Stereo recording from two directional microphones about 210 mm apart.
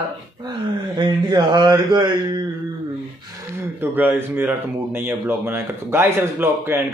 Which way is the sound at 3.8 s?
10° right (ahead or behind).